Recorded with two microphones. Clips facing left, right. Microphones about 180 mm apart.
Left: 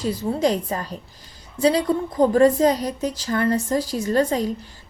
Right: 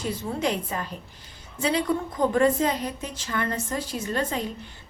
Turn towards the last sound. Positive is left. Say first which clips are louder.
# left 7 dB
turn(degrees=40)  # may be behind; listen again after turning